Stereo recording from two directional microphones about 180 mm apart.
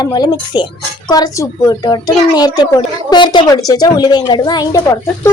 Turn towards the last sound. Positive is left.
turn(degrees=15)  # may be behind; listen again after turning